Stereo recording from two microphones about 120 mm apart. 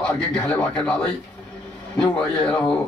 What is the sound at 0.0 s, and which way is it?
Speech, 5° left (ahead or behind).